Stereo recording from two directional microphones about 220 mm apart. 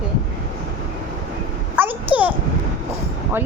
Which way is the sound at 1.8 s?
5° right (ahead or behind).